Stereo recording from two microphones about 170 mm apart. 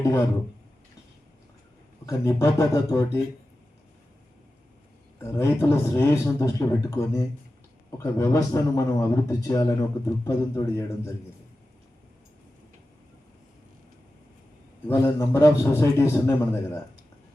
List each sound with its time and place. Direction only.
0.0 s a man's voice: 15° left (ahead or behind)
2.0 s a man's voice: 15° left (ahead or behind)
5.2 s a man's voice: 15° left (ahead or behind)
14.8 s a man's voice: 15° left (ahead or behind)